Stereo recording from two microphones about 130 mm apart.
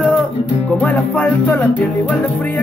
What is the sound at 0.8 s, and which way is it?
Music, 10° left (ahead or behind).